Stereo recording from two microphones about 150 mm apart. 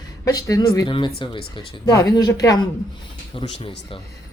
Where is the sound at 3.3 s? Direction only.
35° left (ahead or behind).